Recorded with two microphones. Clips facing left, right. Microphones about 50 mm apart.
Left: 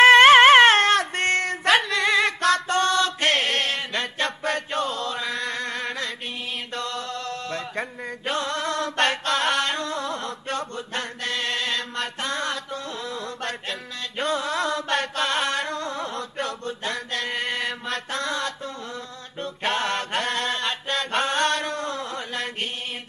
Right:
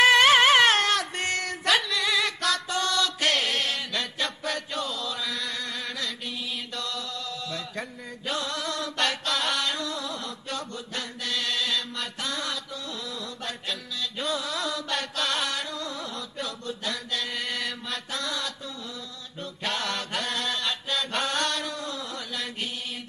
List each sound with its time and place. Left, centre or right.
0.0 s a sound: left
6.7 s mantra: left
8.3 s chant: left
13.7 s music: left
16.8 s mantra: left